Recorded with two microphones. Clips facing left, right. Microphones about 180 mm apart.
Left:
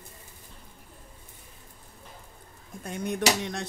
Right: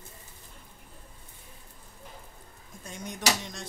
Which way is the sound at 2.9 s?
55° left (ahead or behind).